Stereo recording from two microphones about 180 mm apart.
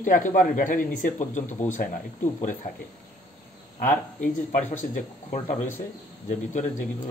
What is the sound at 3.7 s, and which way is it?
Speech, 50° left (ahead or behind).